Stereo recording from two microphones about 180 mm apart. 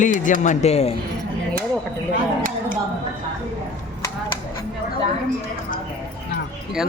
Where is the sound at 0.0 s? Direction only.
45° left (ahead or behind).